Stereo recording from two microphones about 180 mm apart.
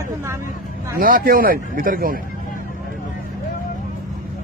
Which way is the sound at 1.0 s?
50° right (ahead or behind).